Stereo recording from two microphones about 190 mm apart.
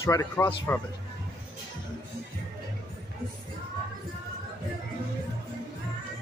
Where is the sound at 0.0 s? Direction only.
15° left (ahead or behind).